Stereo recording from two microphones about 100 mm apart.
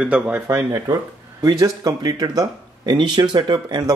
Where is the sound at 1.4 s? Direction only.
35° right (ahead or behind).